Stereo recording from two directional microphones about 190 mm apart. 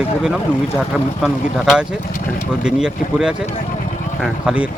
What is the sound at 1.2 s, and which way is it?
Speech, 5° right (ahead or behind).